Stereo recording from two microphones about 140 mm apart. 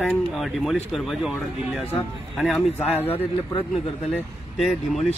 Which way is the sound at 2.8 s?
15° left (ahead or behind).